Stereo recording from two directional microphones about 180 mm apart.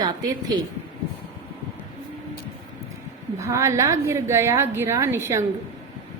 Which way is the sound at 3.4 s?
15° right (ahead or behind).